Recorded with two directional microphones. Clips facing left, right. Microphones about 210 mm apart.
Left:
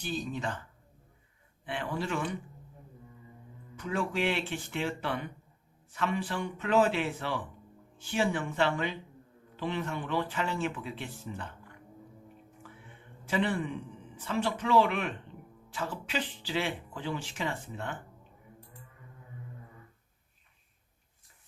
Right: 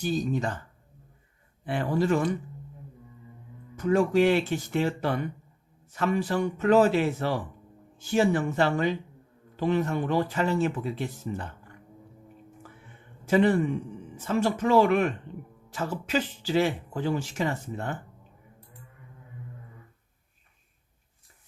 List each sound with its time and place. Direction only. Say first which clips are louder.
0.0 s speech: right 7 dB; 40° right (ahead or behind)
1.6 s speech: right 9 dB; 40° right (ahead or behind)
3.8 s speech: right 10 dB; 40° right (ahead or behind)
13.2 s speech: right 8 dB; 45° right (ahead or behind)